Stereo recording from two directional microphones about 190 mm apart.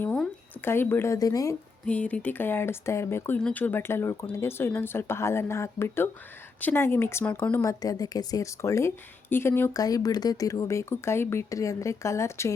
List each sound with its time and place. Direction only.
0.0 s speech: 10° left (ahead or behind)
1.9 s speech: 5° left (ahead or behind)